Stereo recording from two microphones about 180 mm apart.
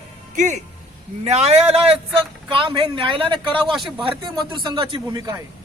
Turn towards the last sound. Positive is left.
turn(degrees=-20)  # may be behind; listen again after turning